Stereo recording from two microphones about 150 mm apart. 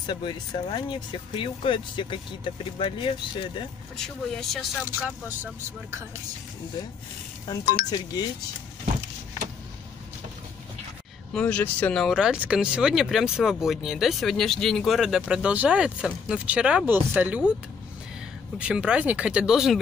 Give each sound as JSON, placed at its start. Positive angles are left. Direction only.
{"t": 0.0, "sound": "speech", "side_deg": 35}
{"t": 3.9, "sound": "speech", "side_deg": 5}
{"t": 5.0, "sound": "speech", "side_deg": -15}
{"t": 7.9, "sound": "speech", "side_deg": 25}
{"t": 11.3, "sound": "speech", "side_deg": 10}
{"t": 18.6, "sound": "speech", "side_deg": -5}